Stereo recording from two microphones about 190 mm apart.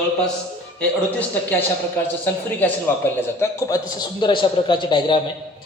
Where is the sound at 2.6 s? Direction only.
10° left (ahead or behind).